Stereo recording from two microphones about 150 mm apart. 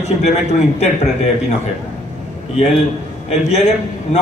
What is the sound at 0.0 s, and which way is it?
Speech, 50° left (ahead or behind).